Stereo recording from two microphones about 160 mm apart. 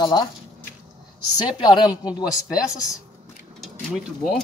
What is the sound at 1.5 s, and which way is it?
Speech, 30° left (ahead or behind).